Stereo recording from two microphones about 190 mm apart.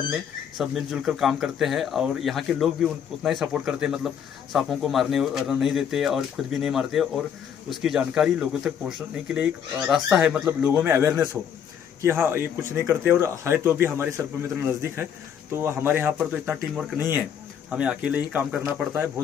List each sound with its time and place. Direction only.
0.1 s speech: centre (ahead or behind)
15.5 s speech: 10° right (ahead or behind)